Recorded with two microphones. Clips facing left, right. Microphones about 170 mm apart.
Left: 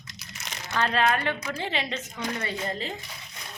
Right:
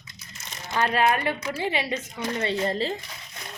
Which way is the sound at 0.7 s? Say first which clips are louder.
Right 2 dB; 10° right (ahead or behind).